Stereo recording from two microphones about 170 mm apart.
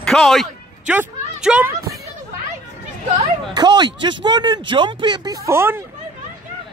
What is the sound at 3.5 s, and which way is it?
Speech, 25° right (ahead or behind).